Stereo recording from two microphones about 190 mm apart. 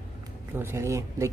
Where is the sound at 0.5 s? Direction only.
15° right (ahead or behind).